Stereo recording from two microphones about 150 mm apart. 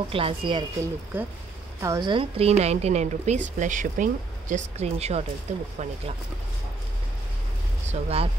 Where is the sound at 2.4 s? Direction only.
45° right (ahead or behind).